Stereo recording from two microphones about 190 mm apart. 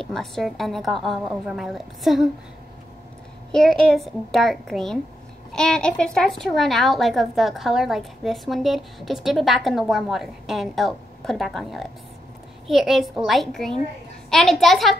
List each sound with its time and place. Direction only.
0.0 s speech: centre (ahead or behind)
3.5 s speech: centre (ahead or behind)